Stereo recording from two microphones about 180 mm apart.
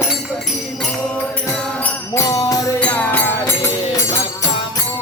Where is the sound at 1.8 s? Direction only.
15° left (ahead or behind).